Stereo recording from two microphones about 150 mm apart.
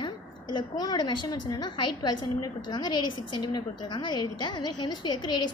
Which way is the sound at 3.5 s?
30° left (ahead or behind).